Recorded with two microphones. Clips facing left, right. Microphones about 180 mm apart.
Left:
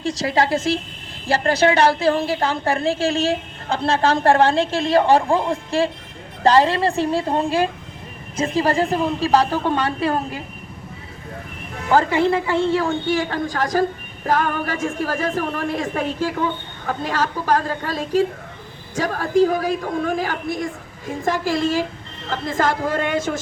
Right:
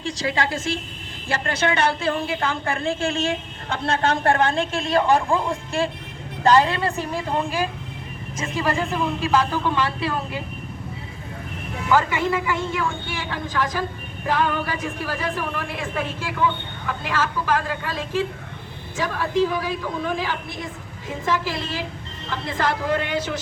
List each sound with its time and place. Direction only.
0.0 s a woman's voice: 35° left (ahead or behind)
11.9 s a woman's voice: 35° left (ahead or behind)